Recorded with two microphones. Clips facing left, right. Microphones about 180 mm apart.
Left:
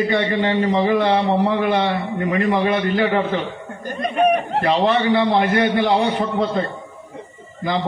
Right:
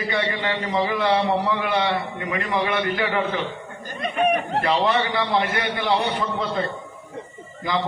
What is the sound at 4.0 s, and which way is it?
Speech, 40° left (ahead or behind).